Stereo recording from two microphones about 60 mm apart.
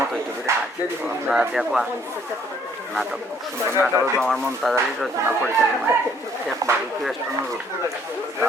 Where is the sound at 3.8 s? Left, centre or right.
Right.